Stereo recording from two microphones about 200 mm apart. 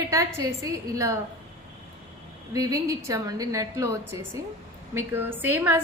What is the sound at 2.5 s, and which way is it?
A woman's voice, 15° right (ahead or behind).